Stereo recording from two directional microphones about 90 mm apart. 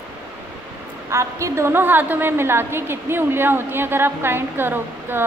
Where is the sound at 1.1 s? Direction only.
30° right (ahead or behind).